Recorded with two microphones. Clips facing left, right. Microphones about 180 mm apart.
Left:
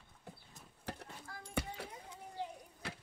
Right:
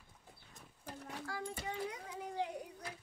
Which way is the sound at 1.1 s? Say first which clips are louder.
Even; 85° right.